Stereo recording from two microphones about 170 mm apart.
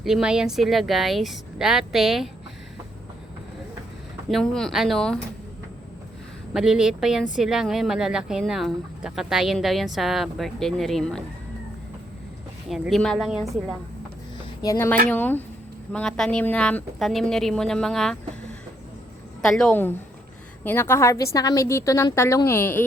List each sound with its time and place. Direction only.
0.0 s speech: 5° right (ahead or behind)
4.3 s speech: 5° left (ahead or behind)
6.5 s speech: 5° right (ahead or behind)
12.6 s speech: centre (ahead or behind)
14.6 s a woman's voice: 15° left (ahead or behind)
19.4 s a woman's voice: 5° left (ahead or behind)